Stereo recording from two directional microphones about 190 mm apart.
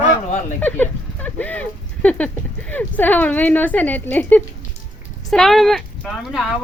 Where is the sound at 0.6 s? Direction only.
10° left (ahead or behind).